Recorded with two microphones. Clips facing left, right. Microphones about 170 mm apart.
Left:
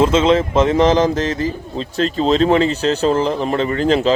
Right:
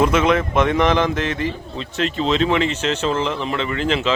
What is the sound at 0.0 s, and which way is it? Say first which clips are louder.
Speech: left 3 dB; 25° left (ahead or behind).